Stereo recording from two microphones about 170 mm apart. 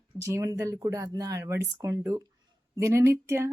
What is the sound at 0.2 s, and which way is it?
Speech, 20° right (ahead or behind).